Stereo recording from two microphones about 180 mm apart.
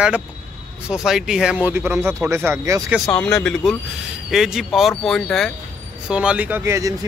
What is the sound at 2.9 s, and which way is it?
Speech, 5° left (ahead or behind).